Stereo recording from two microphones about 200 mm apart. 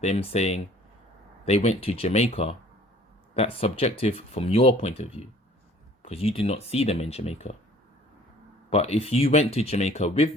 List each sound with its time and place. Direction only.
0.0 s speech: 35° left (ahead or behind)
8.7 s speech: 30° left (ahead or behind)